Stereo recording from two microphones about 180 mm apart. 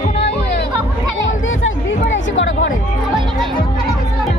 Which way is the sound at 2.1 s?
90° left.